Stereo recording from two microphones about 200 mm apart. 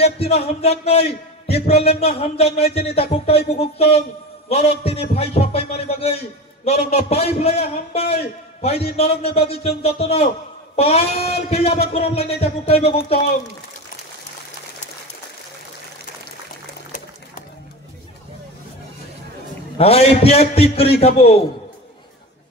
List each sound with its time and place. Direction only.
0.0 s a man's voice: 30° left (ahead or behind)
19.8 s a man's voice: 30° left (ahead or behind)